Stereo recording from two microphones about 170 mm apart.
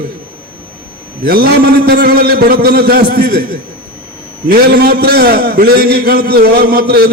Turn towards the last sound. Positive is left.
turn(degrees=-65)  # may be behind; listen again after turning